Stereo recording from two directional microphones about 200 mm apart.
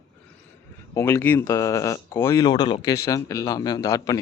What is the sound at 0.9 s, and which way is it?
Speech, 10° left (ahead or behind).